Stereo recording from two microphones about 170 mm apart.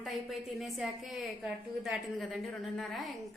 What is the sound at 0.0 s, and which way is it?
A woman's voice, centre (ahead or behind).